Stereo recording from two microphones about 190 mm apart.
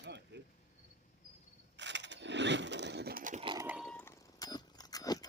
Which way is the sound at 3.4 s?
20° right (ahead or behind).